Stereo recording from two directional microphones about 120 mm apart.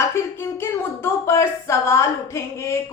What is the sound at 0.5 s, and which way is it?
A woman's voice, 20° left (ahead or behind).